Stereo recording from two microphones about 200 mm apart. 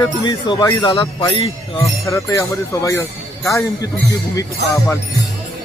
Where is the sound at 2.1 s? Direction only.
15° left (ahead or behind).